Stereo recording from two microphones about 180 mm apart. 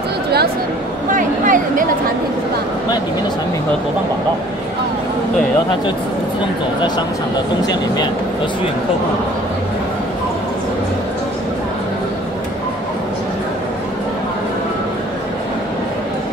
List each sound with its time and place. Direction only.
1.1 s speech: 45° right (ahead or behind)